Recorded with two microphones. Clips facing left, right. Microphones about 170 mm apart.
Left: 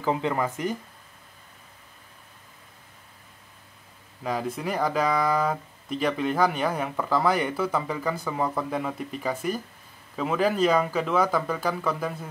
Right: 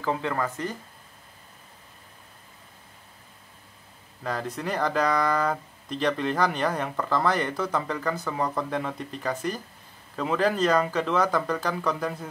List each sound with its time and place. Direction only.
0.0 s speech: 20° left (ahead or behind)
4.2 s speech: 10° left (ahead or behind)